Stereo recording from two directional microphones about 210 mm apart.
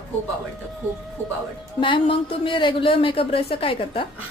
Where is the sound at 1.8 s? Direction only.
25° left (ahead or behind).